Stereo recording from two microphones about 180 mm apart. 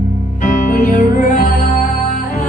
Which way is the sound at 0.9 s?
45° left (ahead or behind).